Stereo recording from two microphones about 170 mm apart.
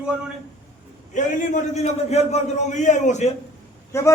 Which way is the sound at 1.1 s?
45° left (ahead or behind).